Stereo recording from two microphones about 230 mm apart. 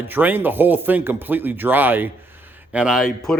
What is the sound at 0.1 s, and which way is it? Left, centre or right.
Speech, centre.